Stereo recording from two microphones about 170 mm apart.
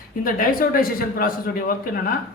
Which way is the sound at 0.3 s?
55° left (ahead or behind).